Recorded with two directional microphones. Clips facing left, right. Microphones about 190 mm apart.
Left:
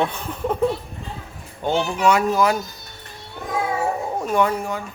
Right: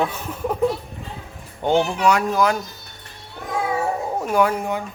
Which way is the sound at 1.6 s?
15° right (ahead or behind).